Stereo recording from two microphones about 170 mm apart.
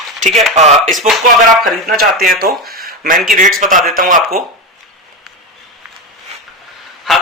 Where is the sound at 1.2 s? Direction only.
60° right (ahead or behind).